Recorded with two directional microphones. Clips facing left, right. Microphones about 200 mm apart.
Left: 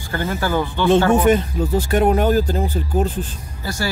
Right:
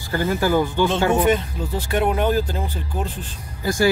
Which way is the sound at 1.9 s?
45° left (ahead or behind).